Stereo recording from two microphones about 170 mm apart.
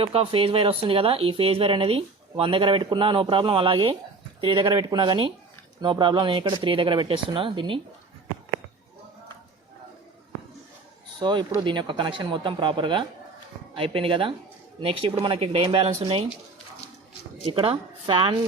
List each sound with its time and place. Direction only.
0.0 s speech: 35° right (ahead or behind)
11.2 s speech: 25° right (ahead or behind)
17.4 s speech: 30° right (ahead or behind)